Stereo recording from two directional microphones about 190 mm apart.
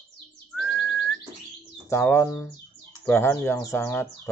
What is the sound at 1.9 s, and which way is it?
Speech, 15° left (ahead or behind).